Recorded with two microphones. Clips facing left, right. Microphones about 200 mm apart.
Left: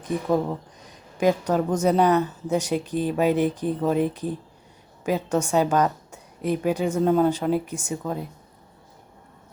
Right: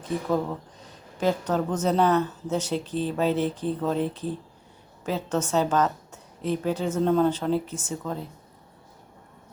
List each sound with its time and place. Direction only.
0.0 s a woman's voice: 15° left (ahead or behind)